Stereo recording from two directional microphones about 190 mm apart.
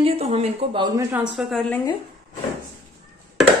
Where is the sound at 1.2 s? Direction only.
Centre (ahead or behind).